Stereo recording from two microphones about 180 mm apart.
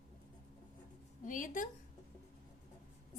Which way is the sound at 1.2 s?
45° left (ahead or behind).